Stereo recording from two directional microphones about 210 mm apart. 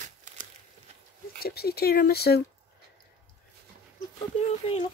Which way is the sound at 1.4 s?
50° left (ahead or behind).